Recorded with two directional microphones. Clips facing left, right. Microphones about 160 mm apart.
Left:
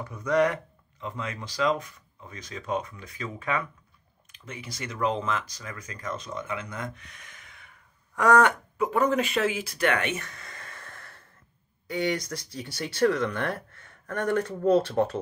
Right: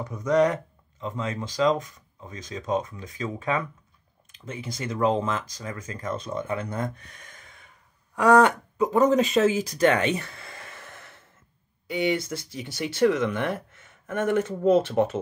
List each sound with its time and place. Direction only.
0.0 s speech: 20° right (ahead or behind)
4.7 s speech: 25° right (ahead or behind); by 7.4 s 40° right (ahead or behind)
8.2 s speech: 15° right (ahead or behind)
9.1 s speech: 30° right (ahead or behind)
10.2 s a sound: 25° right (ahead or behind)
11.9 s speech: 25° right (ahead or behind)